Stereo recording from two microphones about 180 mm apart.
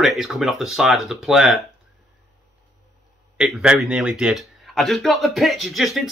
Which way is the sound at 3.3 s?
5° right (ahead or behind).